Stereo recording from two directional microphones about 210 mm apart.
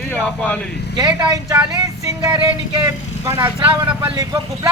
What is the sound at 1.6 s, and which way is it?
Vehicle, 15° right (ahead or behind).